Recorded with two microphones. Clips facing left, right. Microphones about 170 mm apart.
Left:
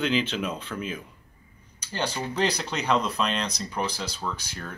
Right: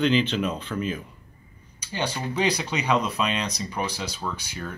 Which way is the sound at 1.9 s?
10° right (ahead or behind).